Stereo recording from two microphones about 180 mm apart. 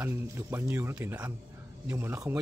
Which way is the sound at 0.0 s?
10° right (ahead or behind).